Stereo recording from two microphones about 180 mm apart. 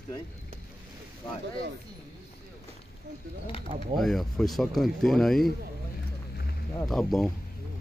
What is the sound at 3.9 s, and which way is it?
Speech, centre (ahead or behind).